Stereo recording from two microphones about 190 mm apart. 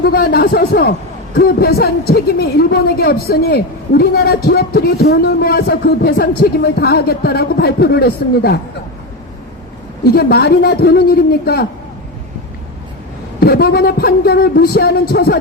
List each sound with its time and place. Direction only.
0.0 s a man's voice: 55° left (ahead or behind)
10.0 s a man's voice: 55° left (ahead or behind)
13.4 s a man's voice: 55° left (ahead or behind)